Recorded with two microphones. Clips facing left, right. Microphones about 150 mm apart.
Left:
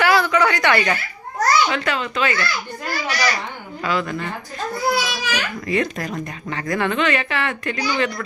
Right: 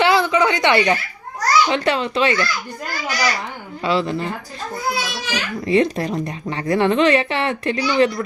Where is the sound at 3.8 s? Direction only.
30° right (ahead or behind).